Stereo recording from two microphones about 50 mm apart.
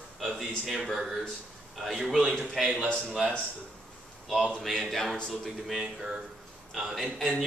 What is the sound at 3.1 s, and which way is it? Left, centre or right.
Speech, centre.